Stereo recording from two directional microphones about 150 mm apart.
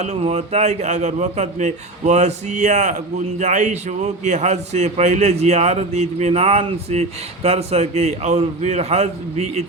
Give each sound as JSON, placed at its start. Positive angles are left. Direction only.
{"t": 0.0, "sound": "a man's voice", "side_deg": -45}